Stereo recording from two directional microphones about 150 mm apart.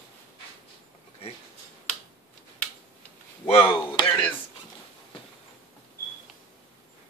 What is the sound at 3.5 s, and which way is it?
Speech, 40° left (ahead or behind).